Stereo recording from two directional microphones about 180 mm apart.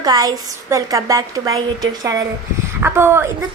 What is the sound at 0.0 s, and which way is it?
A woman's voice, 20° right (ahead or behind).